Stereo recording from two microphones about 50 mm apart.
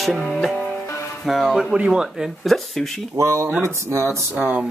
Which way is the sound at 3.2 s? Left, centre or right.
Right.